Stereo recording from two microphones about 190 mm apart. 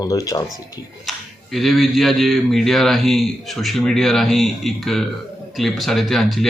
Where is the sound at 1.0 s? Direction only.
Centre (ahead or behind).